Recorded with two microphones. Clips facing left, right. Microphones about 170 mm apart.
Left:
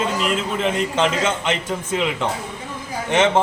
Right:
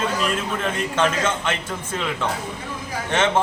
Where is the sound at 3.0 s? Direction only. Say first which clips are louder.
Left 3 dB; 15° left (ahead or behind).